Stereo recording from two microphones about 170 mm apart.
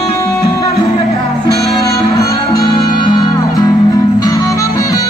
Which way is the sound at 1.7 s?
20° left (ahead or behind).